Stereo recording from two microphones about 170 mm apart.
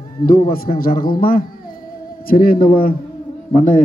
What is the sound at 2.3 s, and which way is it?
A man's voice, 55° left (ahead or behind).